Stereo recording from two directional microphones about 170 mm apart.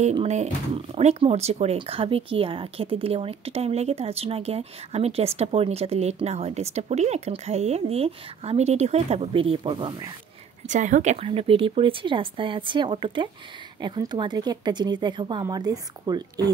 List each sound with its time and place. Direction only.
0.0 s speech: 40° right (ahead or behind)
10.7 s speech: 50° right (ahead or behind); by 16.4 s 25° right (ahead or behind)